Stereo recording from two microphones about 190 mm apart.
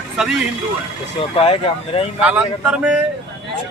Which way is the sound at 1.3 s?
30° left (ahead or behind).